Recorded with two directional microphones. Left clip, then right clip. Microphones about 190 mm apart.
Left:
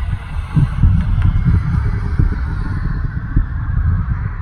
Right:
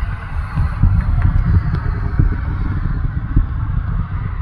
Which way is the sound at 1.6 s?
15° right (ahead or behind).